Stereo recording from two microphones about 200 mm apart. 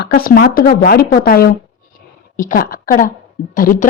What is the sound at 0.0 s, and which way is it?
A woman's voice, 50° left (ahead or behind).